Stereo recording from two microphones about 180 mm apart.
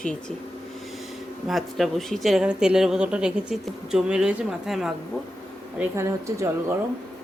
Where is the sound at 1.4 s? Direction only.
Centre (ahead or behind).